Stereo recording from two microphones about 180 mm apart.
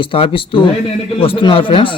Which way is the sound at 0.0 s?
30° left (ahead or behind).